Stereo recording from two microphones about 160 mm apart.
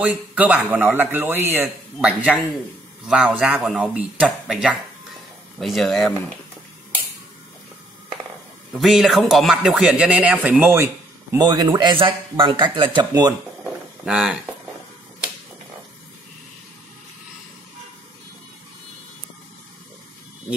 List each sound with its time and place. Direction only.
0.0 s speech: 10° right (ahead or behind)
8.7 s speech: centre (ahead or behind)
11.3 s speech: 25° right (ahead or behind)
14.0 s speech: 5° right (ahead or behind)